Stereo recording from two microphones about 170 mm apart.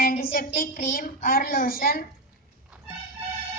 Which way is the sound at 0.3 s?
55° left (ahead or behind).